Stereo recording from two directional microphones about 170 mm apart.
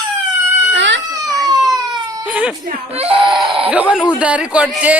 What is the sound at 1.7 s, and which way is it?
Baby cry, 25° right (ahead or behind).